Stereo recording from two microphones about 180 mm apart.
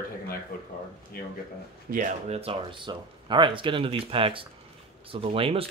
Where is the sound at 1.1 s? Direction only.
55° left (ahead or behind).